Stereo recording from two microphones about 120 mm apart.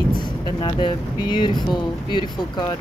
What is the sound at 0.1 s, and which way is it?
Speech, 40° left (ahead or behind).